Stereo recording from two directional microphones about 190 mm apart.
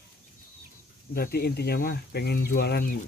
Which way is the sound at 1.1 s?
55° left (ahead or behind).